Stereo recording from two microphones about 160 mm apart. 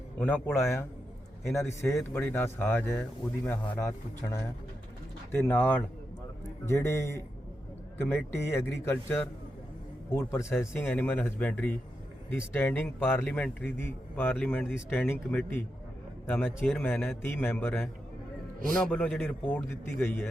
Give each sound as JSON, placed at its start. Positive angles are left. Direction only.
{"t": 0.2, "sound": "speech", "side_deg": 10}